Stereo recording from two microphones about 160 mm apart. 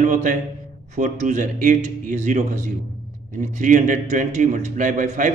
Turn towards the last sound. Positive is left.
turn(degrees=-55)  # may be behind; listen again after turning